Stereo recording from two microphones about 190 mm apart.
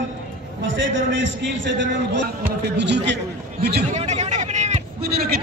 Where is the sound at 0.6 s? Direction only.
80° right; by 3.9 s 60° right (ahead or behind).